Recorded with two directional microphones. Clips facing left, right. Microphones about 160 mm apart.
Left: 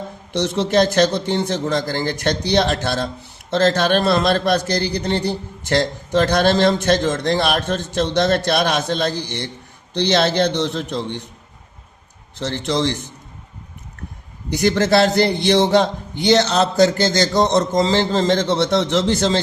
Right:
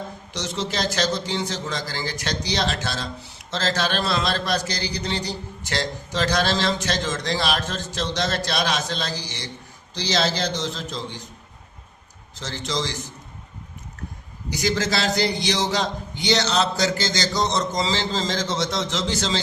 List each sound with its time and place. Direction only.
0.3 s speech: 55° left (ahead or behind)
12.3 s speech: 60° left (ahead or behind)
14.5 s speech: 60° left (ahead or behind)